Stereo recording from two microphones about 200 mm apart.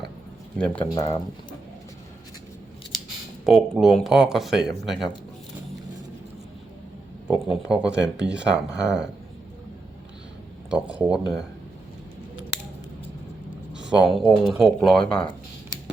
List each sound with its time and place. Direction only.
0.6 s speech: 5° left (ahead or behind)
3.4 s speech: centre (ahead or behind)
7.3 s speech: 5° right (ahead or behind)
10.7 s speech: 5° right (ahead or behind)
13.7 s speech: 5° right (ahead or behind)